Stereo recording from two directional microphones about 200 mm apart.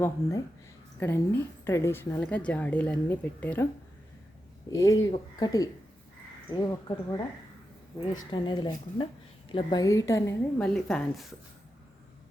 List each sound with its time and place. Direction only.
0.0 s a woman's voice: 15° left (ahead or behind)
4.7 s a woman's voice: 15° left (ahead or behind)
8.2 s a woman's voice: 20° left (ahead or behind)
10.6 s speech: 5° left (ahead or behind)